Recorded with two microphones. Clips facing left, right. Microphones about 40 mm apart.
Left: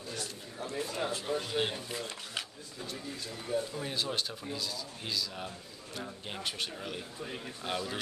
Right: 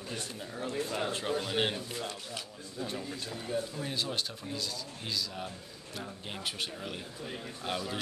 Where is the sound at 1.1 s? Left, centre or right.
Right.